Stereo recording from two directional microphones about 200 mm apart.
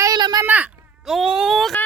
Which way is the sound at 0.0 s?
20° right (ahead or behind).